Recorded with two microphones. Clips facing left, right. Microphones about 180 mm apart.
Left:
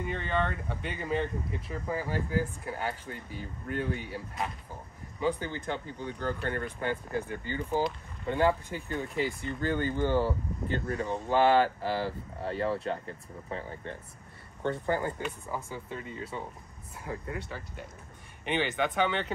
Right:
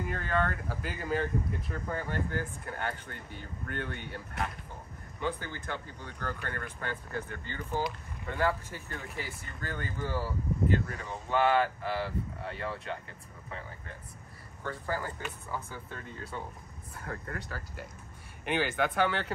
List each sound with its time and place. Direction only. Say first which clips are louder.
0.0 s speech: even; centre (ahead or behind)
5.2 s speech: left 5 dB; 20° left (ahead or behind)
15.9 s speech: left 3 dB; 5° left (ahead or behind)